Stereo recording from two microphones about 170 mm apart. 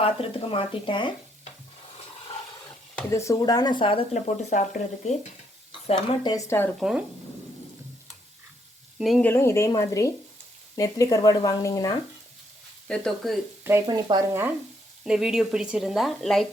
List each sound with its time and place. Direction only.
0.0 s speech: 35° left (ahead or behind)
3.1 s speech: 20° left (ahead or behind); by 5.1 s 45° left (ahead or behind)
5.9 s a woman's voice: 25° left (ahead or behind)
6.7 s a woman's voice: 5° right (ahead or behind)
9.0 s a woman's voice: centre (ahead or behind)
9.3 s a woman's voice: 15° left (ahead or behind)
12.9 s a woman's voice: centre (ahead or behind)
13.8 s speech: 25° right (ahead or behind)
15.0 s a woman's voice: 5° right (ahead or behind)